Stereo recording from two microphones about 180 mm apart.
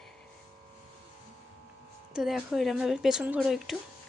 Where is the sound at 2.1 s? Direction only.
Centre (ahead or behind).